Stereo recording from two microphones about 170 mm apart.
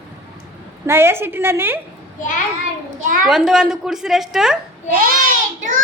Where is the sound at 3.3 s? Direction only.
5° right (ahead or behind).